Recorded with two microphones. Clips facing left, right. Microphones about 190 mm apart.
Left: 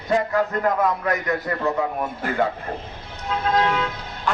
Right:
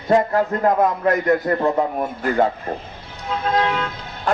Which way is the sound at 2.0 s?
45° right (ahead or behind).